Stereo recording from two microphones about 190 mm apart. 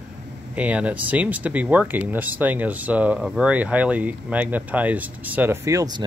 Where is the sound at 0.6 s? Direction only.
5° right (ahead or behind).